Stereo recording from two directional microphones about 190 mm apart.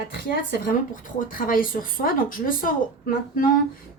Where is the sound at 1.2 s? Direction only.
45° left (ahead or behind).